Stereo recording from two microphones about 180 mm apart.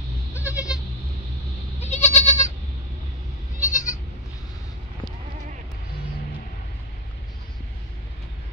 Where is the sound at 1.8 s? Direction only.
40° left (ahead or behind).